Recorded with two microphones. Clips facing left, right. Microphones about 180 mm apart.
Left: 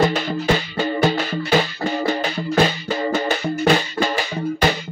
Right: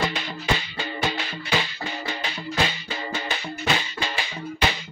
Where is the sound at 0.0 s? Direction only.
45° left (ahead or behind).